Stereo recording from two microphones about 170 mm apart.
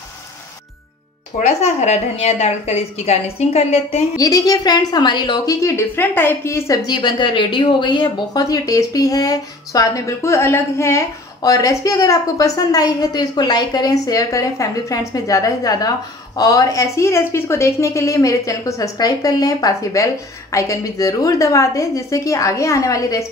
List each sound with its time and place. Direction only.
1.4 s a woman's voice: 40° left (ahead or behind)
4.2 s a woman's voice: 20° left (ahead or behind)